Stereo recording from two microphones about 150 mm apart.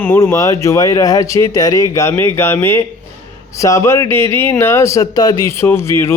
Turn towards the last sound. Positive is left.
turn(degrees=15)  # may be behind; listen again after turning